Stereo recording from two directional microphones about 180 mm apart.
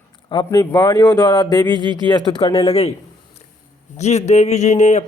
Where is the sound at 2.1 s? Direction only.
25° left (ahead or behind).